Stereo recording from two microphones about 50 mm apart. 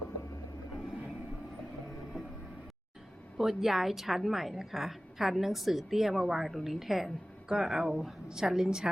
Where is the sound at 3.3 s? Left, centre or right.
Centre.